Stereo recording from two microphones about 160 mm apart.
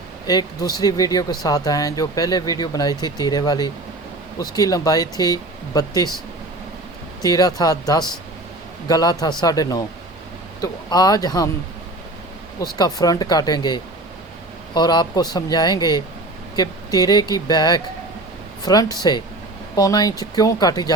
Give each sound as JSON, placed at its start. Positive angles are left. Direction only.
{"t": 0.3, "sound": "speech", "side_deg": 25}
{"t": 7.2, "sound": "speech", "side_deg": 25}
{"t": 12.5, "sound": "speech", "side_deg": 25}